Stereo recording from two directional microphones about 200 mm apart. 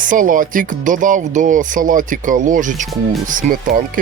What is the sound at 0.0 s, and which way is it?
Speech, 40° right (ahead or behind).